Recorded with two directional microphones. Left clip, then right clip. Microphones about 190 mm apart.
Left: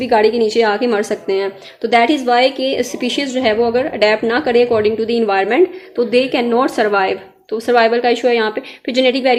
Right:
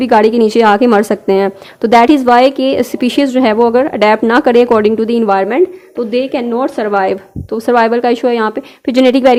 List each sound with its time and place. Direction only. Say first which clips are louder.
0.0 s a woman's voice: right 4 dB; 50° right (ahead or behind); by 7.0 s 20° right (ahead or behind)
7.0 s a woman's voice: right 3 dB; 45° right (ahead or behind)